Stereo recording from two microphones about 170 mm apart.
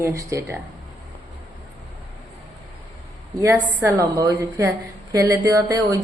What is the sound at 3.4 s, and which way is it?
A woman's voice, 10° right (ahead or behind).